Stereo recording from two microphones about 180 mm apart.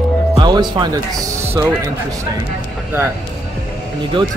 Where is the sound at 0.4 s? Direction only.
25° right (ahead or behind).